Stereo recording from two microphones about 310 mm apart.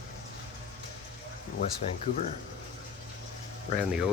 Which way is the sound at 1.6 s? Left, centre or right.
Left.